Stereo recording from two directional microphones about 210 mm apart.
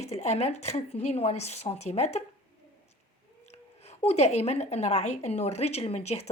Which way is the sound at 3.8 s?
30° left (ahead or behind).